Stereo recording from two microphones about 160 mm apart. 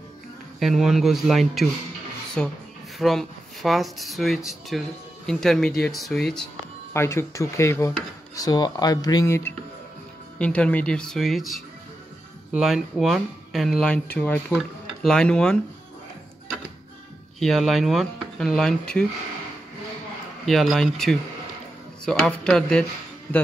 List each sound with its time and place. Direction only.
0.6 s speech: centre (ahead or behind)
6.9 s speech: 15° left (ahead or behind)
17.4 s speech: centre (ahead or behind)
20.4 s speech: centre (ahead or behind)